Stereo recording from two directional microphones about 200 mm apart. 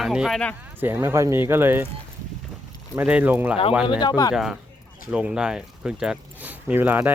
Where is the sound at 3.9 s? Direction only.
20° left (ahead or behind).